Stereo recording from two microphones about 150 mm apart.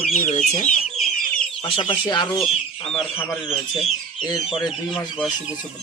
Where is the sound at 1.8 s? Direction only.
30° left (ahead or behind).